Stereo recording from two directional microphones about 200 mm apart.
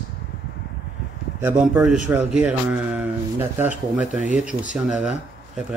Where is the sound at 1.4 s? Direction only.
10° right (ahead or behind).